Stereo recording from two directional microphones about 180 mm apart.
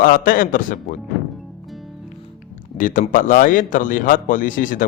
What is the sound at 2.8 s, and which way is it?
A man's voice, 45° left (ahead or behind).